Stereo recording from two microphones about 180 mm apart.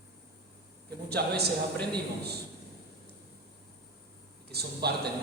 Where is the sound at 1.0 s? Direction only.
65° right (ahead or behind).